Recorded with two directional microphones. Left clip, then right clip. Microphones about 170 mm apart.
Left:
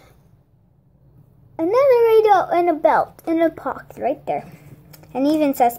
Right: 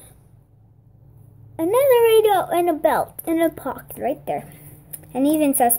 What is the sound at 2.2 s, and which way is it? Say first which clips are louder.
A woman's voice: left 3 dB; 20° right (ahead or behind).